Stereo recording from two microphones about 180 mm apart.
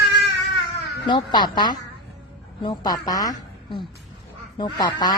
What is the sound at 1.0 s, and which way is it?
Speech, 25° left (ahead or behind).